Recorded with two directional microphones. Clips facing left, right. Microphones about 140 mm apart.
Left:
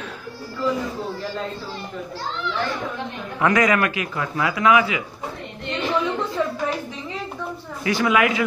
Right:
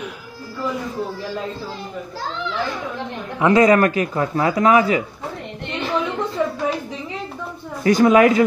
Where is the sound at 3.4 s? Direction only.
30° right (ahead or behind).